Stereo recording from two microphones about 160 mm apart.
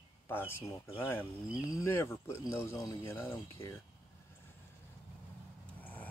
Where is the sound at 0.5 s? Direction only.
15° left (ahead or behind).